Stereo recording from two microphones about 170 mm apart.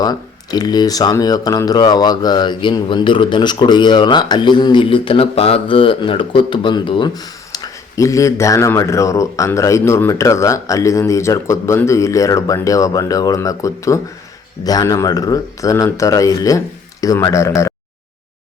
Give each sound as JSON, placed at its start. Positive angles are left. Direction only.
{"t": 0.0, "sound": "speech", "side_deg": 25}